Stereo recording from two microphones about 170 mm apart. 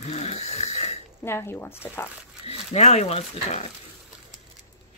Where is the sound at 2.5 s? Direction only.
40° left (ahead or behind).